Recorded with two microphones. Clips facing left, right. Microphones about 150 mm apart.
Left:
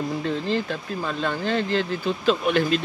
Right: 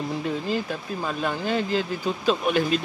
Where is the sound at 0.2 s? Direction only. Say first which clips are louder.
Left 2 dB; 10° right (ahead or behind).